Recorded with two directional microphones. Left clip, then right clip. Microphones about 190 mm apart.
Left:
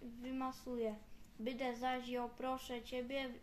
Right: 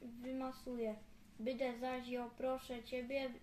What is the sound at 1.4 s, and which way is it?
A woman's voice, 15° left (ahead or behind).